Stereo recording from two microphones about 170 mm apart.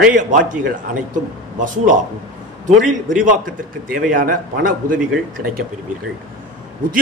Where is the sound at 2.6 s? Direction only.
50° right (ahead or behind).